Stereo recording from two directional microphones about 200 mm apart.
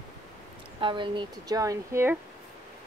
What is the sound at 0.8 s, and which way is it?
A woman's voice, 25° right (ahead or behind).